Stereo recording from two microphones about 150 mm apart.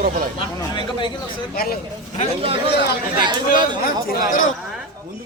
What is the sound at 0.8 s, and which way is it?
Speech, 30° left (ahead or behind).